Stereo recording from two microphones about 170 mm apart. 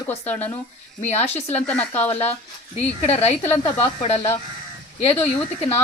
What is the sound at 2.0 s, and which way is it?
Speech, 35° left (ahead or behind).